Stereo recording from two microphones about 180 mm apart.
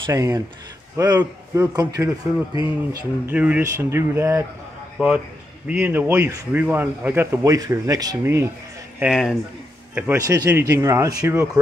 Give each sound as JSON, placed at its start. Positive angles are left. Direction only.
{"t": 0.0, "sound": "speech", "side_deg": -20}
{"t": 2.9, "sound": "speech", "side_deg": -20}
{"t": 3.3, "sound": "a man's voice", "side_deg": -10}
{"t": 9.0, "sound": "speech", "side_deg": 0}
{"t": 9.9, "sound": "speech", "side_deg": -15}